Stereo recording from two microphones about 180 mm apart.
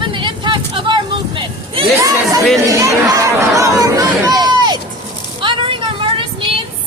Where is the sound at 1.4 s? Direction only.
25° right (ahead or behind).